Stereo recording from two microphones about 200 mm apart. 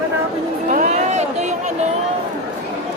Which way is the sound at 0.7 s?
35° right (ahead or behind).